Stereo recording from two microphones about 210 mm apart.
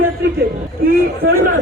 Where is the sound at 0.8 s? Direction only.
45° right (ahead or behind).